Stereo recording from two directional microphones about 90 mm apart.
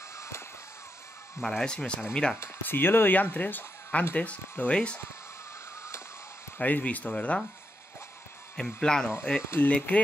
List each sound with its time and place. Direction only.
1.4 s speech: 5° left (ahead or behind)
2.4 s speech: 25° left (ahead or behind)
6.6 s speech: 15° left (ahead or behind)
8.5 s speech: 10° left (ahead or behind)
9.4 s speech: 30° left (ahead or behind)
9.7 s speech: 15° left (ahead or behind)